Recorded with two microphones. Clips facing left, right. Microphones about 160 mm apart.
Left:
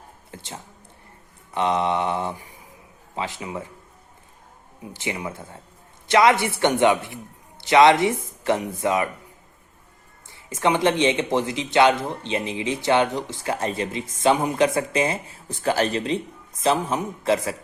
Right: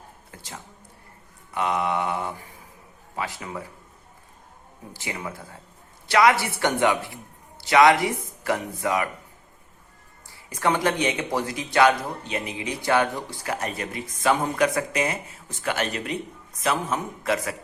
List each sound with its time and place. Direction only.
0.3 s a sound: 25° left (ahead or behind)
1.5 s speech: 25° left (ahead or behind)
4.9 s speech: 20° left (ahead or behind)
10.2 s speech: 20° left (ahead or behind)